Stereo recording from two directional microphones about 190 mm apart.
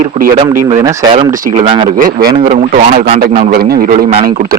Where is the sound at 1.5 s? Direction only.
25° right (ahead or behind).